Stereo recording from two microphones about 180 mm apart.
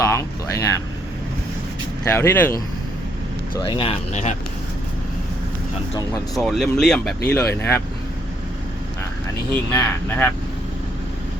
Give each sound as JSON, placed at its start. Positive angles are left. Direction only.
{"t": 0.0, "sound": "speech", "side_deg": 15}
{"t": 2.0, "sound": "speech", "side_deg": 10}
{"t": 3.6, "sound": "speech", "side_deg": 30}
{"t": 6.3, "sound": "speech", "side_deg": 0}
{"t": 9.7, "sound": "speech", "side_deg": 10}